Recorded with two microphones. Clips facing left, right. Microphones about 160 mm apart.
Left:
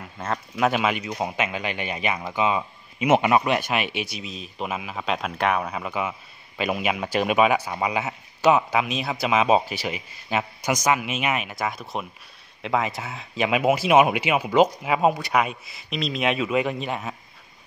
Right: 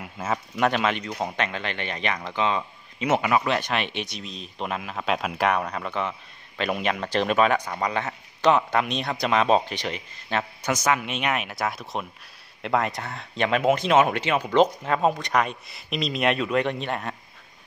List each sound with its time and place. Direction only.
0.0 s speech: 5° right (ahead or behind)
0.7 s a man's voice: 5° left (ahead or behind)
3.2 s a man's voice: 25° left (ahead or behind); by 17.1 s centre (ahead or behind)